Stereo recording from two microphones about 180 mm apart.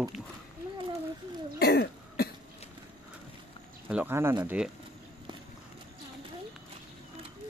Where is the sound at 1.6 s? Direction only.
60° left (ahead or behind).